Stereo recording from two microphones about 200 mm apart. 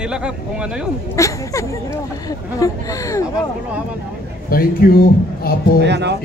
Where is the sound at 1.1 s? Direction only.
15° left (ahead or behind).